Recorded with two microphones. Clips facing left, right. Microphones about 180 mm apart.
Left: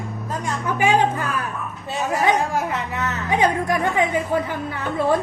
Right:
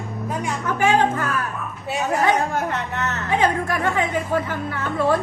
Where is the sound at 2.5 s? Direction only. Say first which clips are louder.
Even; 5° left (ahead or behind).